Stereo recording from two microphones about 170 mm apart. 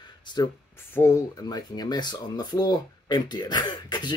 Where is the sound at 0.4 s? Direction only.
25° left (ahead or behind).